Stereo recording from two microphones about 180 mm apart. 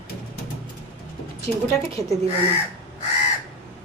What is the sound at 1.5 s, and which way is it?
Speech, 10° left (ahead or behind).